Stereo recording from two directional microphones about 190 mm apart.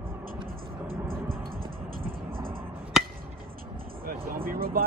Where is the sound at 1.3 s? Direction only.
50° right (ahead or behind).